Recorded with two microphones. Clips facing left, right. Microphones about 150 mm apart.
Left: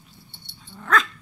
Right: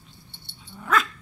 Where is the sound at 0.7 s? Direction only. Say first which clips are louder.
Left 1 dB; 5° right (ahead or behind).